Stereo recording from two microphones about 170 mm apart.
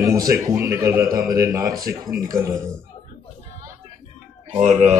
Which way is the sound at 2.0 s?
20° right (ahead or behind).